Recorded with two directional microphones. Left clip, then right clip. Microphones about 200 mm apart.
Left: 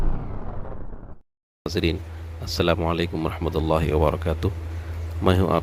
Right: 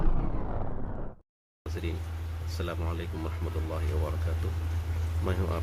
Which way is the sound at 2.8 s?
45° left (ahead or behind).